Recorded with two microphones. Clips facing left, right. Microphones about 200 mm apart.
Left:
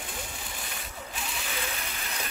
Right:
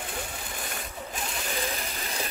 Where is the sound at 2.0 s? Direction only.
30° right (ahead or behind).